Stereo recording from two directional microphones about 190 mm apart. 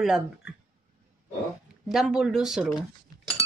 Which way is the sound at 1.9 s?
Centre (ahead or behind).